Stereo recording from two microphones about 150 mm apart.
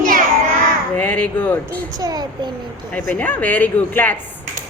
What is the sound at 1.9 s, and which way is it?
Speech, 25° right (ahead or behind).